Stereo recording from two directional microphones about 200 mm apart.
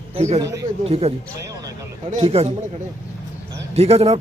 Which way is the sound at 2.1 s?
30° right (ahead or behind).